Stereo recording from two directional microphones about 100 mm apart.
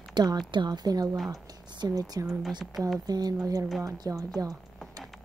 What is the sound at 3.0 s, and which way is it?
Speech, 40° right (ahead or behind).